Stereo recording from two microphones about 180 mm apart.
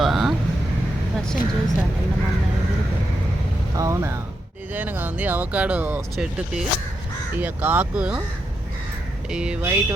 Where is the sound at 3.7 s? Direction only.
15° right (ahead or behind).